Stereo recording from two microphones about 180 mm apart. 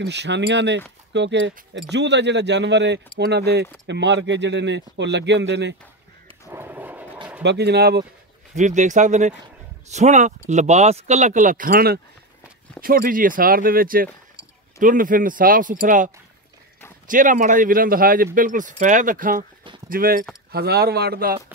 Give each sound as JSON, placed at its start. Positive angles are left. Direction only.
{"t": 0.0, "sound": "speech", "side_deg": -75}
{"t": 3.8, "sound": "speech", "side_deg": -80}
{"t": 6.5, "sound": "a sound", "side_deg": -10}
{"t": 7.4, "sound": "a man's voice", "side_deg": -65}
{"t": 8.5, "sound": "speech", "side_deg": -40}
{"t": 17.1, "sound": "a man's voice", "side_deg": -45}